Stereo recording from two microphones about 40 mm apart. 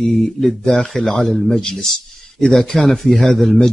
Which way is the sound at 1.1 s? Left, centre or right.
Centre.